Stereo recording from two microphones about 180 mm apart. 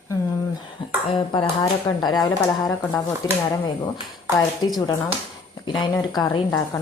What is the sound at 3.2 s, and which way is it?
Speech, 20° left (ahead or behind).